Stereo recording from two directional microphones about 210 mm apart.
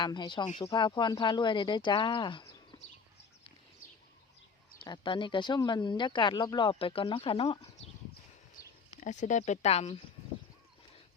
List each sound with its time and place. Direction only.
0.0 s speech: 20° left (ahead or behind)
4.8 s speech: 25° left (ahead or behind)
8.6 s a sound: 15° left (ahead or behind)
9.0 s speech: 35° left (ahead or behind)